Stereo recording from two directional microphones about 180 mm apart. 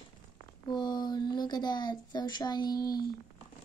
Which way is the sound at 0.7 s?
25° left (ahead or behind).